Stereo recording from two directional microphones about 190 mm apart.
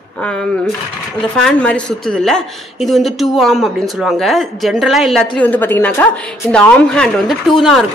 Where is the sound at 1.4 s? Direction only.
5° left (ahead or behind).